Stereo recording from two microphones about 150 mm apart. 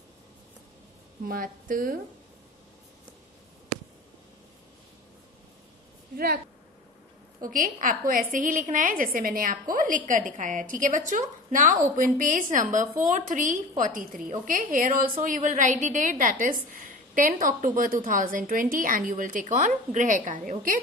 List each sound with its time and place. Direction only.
1.2 s a woman's voice: 70° right (ahead or behind)
6.1 s a woman's voice: 80° right
7.4 s a woman's voice: 65° right (ahead or behind)